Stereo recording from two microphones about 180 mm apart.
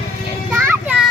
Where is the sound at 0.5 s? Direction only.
5° right (ahead or behind).